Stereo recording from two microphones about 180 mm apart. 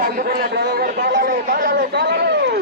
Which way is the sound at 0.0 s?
50° right (ahead or behind).